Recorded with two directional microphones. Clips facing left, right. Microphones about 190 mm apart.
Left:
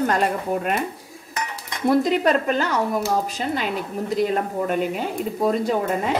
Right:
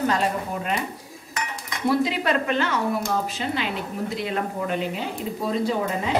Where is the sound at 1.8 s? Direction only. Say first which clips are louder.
Left 4 dB; 45° left (ahead or behind).